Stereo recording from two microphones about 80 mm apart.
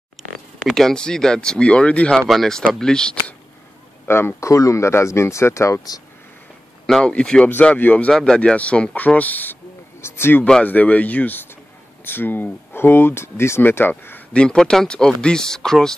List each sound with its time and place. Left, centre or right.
0.7 s speech: centre
2.2 s speech: centre
4.1 s speech: left
7.1 s speech: centre
8.1 s speech: centre
8.4 s speech: centre
10.4 s speech: centre
14.3 s speech: centre